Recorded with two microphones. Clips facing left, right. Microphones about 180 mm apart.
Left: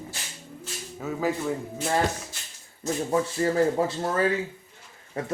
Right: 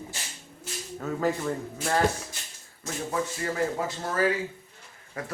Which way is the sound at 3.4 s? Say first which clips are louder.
Left 8 dB; 25° left (ahead or behind).